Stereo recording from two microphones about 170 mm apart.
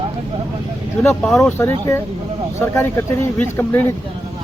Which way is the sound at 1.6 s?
15° left (ahead or behind).